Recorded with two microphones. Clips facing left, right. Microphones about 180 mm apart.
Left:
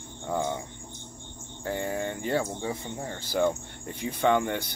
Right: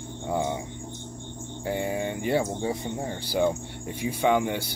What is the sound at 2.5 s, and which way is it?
Speech, 25° right (ahead or behind).